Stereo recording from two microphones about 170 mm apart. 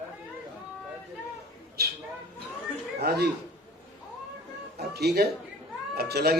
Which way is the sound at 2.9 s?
70° right (ahead or behind).